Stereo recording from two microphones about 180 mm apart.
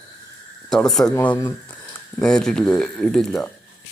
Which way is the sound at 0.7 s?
Centre (ahead or behind).